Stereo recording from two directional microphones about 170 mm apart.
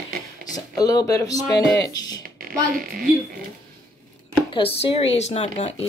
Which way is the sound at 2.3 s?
55° right (ahead or behind).